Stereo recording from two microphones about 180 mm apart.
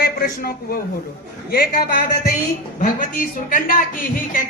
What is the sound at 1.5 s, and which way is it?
A man's voice, 55° left (ahead or behind).